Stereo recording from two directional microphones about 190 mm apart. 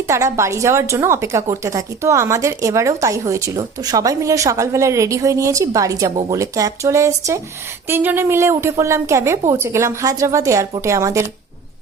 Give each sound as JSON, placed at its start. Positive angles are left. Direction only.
{"t": 0.1, "sound": "a woman's voice", "side_deg": -15}